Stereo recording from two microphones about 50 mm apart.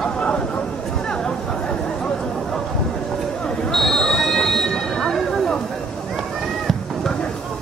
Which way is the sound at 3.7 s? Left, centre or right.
Centre.